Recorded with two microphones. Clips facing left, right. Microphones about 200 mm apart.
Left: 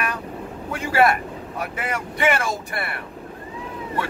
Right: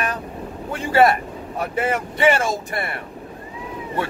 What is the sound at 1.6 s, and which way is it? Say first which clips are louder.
Speech: right 6 dB; 30° right (ahead or behind).